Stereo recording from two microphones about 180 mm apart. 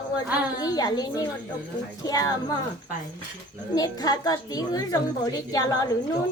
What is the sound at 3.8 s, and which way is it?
A woman's voice, 20° left (ahead or behind).